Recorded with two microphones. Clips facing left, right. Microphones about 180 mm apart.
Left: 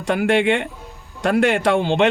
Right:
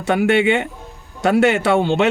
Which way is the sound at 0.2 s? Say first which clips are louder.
Right 1 dB; 5° right (ahead or behind).